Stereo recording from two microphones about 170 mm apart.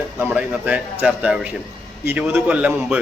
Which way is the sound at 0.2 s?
10° right (ahead or behind).